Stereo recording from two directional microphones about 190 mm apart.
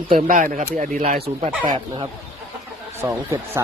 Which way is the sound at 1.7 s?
20° right (ahead or behind).